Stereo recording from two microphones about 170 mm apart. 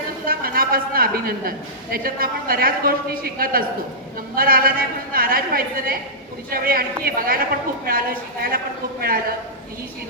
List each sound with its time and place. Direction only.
0.3 s a woman's voice: 60° right (ahead or behind)